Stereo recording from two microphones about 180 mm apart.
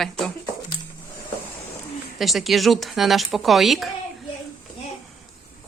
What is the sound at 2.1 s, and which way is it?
Speech, centre (ahead or behind).